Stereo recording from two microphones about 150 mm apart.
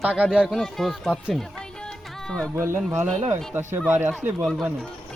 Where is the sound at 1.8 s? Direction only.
5° left (ahead or behind).